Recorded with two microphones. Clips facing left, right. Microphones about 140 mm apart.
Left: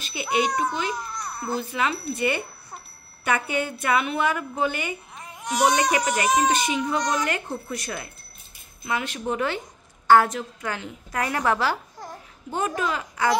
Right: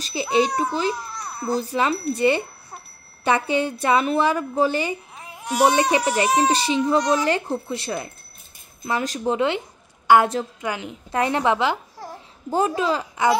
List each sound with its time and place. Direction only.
0.0 s a woman's voice: 30° right (ahead or behind)
1.5 s a woman's voice: 35° right (ahead or behind)
5.2 s baby cry: 5° right (ahead or behind)
5.6 s a child's voice: 30° right (ahead or behind)
10.1 s a woman's voice: 15° right (ahead or behind)